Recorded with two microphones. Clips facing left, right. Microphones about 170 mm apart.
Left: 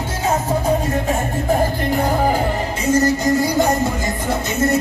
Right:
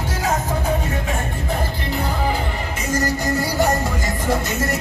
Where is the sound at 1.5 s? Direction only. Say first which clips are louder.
Left 8 dB; 45° left (ahead or behind).